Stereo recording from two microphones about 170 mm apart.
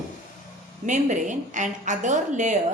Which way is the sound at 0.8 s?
45° right (ahead or behind).